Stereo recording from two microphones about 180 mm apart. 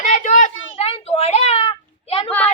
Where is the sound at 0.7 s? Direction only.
30° left (ahead or behind).